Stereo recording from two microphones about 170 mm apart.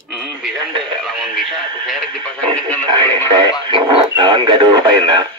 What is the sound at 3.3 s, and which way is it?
Speech, 25° right (ahead or behind).